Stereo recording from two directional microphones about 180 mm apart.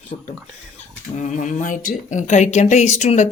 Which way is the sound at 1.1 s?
40° left (ahead or behind).